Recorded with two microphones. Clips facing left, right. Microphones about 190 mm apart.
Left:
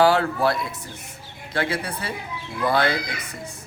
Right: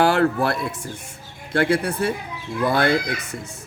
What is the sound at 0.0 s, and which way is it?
Speech, 55° right (ahead or behind).